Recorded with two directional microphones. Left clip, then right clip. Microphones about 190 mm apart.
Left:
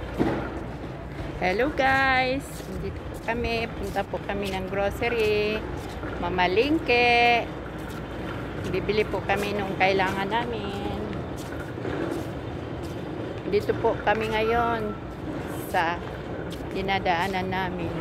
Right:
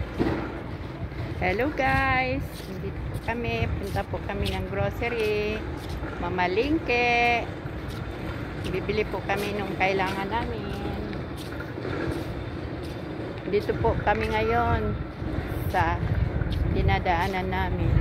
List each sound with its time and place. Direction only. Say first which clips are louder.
0.2 s a sound: left 1 dB; 50° left (ahead or behind)
1.4 s speech: left 2 dB; 5° right (ahead or behind)
8.6 s speech: left 2 dB; centre (ahead or behind)
13.5 s speech: left 1 dB; 15° right (ahead or behind)